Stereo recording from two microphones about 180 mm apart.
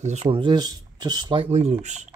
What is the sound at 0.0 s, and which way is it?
Speech, 35° right (ahead or behind).